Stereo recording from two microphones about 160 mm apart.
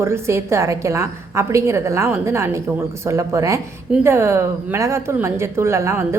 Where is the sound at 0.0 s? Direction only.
15° right (ahead or behind).